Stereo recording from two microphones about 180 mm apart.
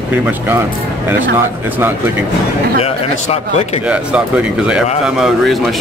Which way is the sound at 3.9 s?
5° right (ahead or behind).